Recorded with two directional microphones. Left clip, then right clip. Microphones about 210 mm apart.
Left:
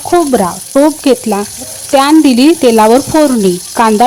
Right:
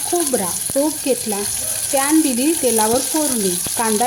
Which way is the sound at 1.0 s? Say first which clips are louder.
Left 10 dB; 45° left (ahead or behind).